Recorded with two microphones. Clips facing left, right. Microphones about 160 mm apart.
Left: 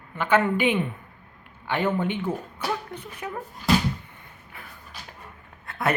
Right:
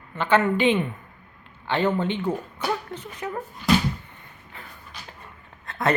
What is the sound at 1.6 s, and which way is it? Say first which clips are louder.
Speech: right 2 dB; 10° left (ahead or behind).